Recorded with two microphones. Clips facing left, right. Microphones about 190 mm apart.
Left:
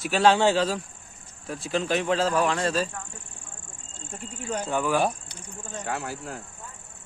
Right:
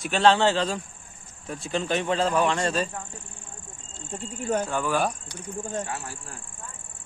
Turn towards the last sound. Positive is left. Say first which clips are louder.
# left 5 dB
turn(degrees=60)  # may be behind; listen again after turning